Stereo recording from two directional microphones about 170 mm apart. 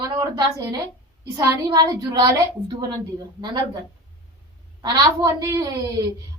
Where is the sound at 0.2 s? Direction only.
25° right (ahead or behind).